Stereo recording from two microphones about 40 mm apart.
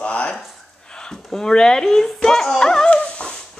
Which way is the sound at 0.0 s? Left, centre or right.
Left.